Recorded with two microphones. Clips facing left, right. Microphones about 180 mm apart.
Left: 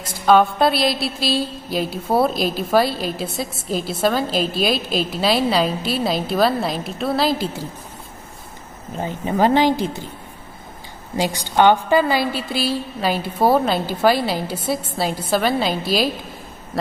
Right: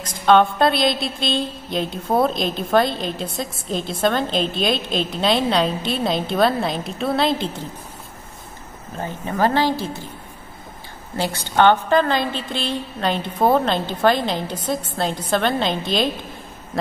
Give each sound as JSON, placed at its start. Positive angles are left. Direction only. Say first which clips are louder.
{"t": 0.2, "sound": "a woman's voice", "louder": "even", "side_deg": 5}
{"t": 8.9, "sound": "a woman's voice", "louder": "left 3 dB", "side_deg": 15}
{"t": 11.1, "sound": "a woman's voice", "louder": "left 1 dB", "side_deg": 15}